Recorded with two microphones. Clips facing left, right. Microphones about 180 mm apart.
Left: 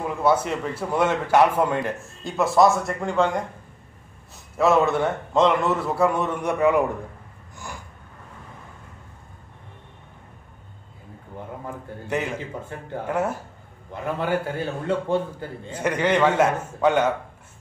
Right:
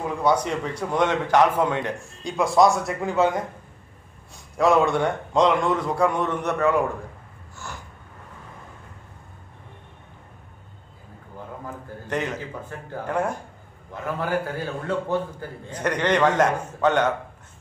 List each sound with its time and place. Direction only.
0.0 s a man's voice: 5° left (ahead or behind)
4.6 s a man's voice: centre (ahead or behind)
7.5 s a sound: 15° left (ahead or behind)
12.1 s a man's voice: 10° left (ahead or behind)
14.0 s a man's voice: 25° left (ahead or behind)
15.7 s a man's voice: 10° left (ahead or behind)